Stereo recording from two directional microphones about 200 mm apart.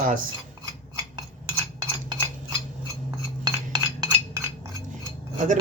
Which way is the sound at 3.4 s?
20° right (ahead or behind).